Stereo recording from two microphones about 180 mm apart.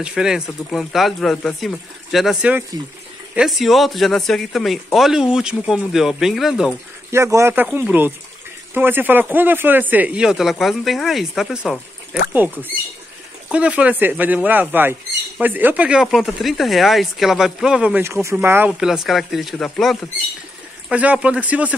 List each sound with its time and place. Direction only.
0.0 s speech: 5° right (ahead or behind)
7.1 s speech: 15° right (ahead or behind)
13.5 s speech: 5° right (ahead or behind)